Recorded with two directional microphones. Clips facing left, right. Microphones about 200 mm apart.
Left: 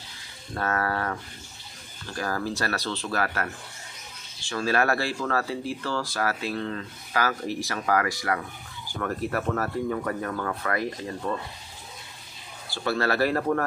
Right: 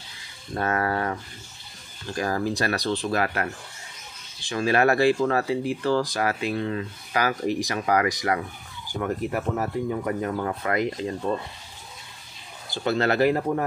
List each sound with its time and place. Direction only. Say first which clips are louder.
0.6 s speech: right 2 dB; 20° right (ahead or behind)
2.1 s speech: right 4 dB; 20° right (ahead or behind)
12.6 s speech: right 3 dB; 20° right (ahead or behind)